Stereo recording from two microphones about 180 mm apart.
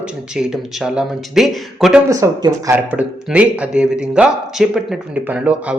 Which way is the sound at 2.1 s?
20° right (ahead or behind).